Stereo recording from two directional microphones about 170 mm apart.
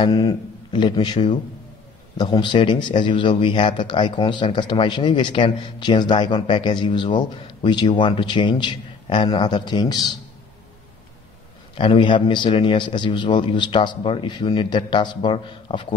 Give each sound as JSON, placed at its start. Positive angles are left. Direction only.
{"t": 0.0, "sound": "speech", "side_deg": 20}
{"t": 11.7, "sound": "speech", "side_deg": 30}